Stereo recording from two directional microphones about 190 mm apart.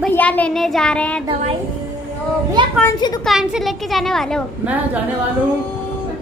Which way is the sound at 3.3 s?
Centre (ahead or behind).